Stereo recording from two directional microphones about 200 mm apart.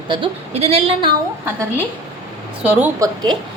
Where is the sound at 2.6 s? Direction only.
15° right (ahead or behind).